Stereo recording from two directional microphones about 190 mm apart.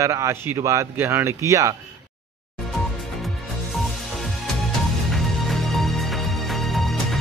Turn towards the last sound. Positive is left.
turn(degrees=0)  # may be behind; listen again after turning